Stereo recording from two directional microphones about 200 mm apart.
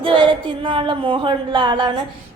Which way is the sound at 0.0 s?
25° right (ahead or behind).